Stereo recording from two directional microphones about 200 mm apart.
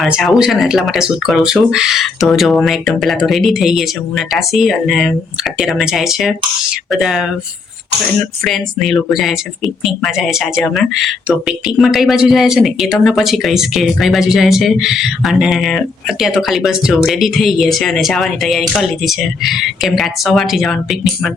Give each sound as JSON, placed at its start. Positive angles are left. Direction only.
{"t": 0.0, "sound": "speech", "side_deg": 0}